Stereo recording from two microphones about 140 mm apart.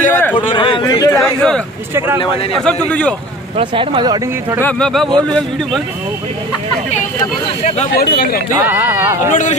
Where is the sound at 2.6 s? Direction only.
10° left (ahead or behind).